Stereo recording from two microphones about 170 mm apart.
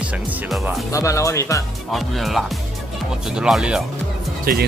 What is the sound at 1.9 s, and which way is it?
Speech, centre (ahead or behind).